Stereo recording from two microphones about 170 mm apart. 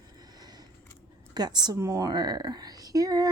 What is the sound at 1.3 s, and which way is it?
A woman's voice, 25° right (ahead or behind).